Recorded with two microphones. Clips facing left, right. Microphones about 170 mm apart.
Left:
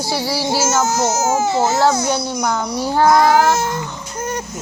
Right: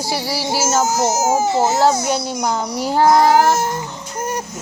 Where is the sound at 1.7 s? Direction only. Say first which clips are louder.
Even; 35° right (ahead or behind).